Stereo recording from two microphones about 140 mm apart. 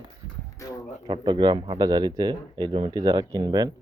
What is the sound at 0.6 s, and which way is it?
Speech, 25° left (ahead or behind).